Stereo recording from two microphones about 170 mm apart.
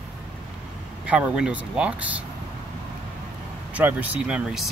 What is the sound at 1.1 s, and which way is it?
Speech, 5° right (ahead or behind).